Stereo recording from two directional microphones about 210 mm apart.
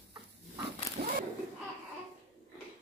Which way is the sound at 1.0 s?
50° right (ahead or behind).